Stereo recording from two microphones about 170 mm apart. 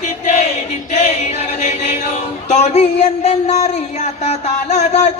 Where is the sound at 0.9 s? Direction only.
40° left (ahead or behind).